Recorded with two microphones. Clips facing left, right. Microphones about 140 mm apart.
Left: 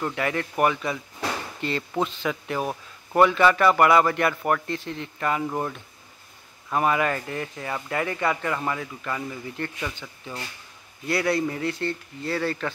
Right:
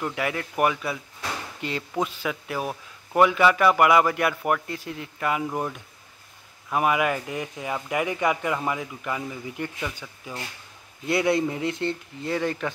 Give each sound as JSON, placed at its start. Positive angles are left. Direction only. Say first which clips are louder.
{"t": 0.0, "sound": "speech", "louder": "left 1 dB", "side_deg": -5}
{"t": 11.1, "sound": "speech", "louder": "right 2 dB", "side_deg": -20}